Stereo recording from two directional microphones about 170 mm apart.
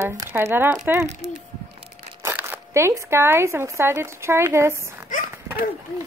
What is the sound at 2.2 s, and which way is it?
Speech, 15° right (ahead or behind).